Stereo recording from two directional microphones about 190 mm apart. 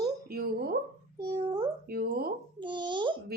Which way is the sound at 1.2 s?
20° right (ahead or behind).